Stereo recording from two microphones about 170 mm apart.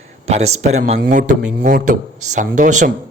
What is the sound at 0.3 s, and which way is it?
Speech, 40° right (ahead or behind).